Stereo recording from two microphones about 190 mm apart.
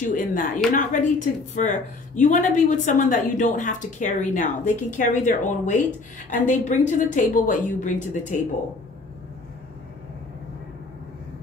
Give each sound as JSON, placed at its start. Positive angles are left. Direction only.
{"t": 0.0, "sound": "speech", "side_deg": 40}